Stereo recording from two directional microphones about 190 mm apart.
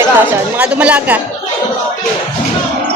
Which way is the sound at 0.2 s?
10° right (ahead or behind).